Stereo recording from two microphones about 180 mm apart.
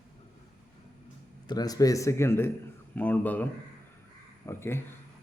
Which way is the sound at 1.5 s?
20° left (ahead or behind).